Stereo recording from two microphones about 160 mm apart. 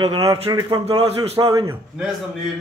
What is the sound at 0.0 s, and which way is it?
Speech, 25° right (ahead or behind).